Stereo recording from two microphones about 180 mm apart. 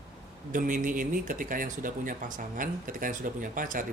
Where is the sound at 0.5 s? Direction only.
45° right (ahead or behind).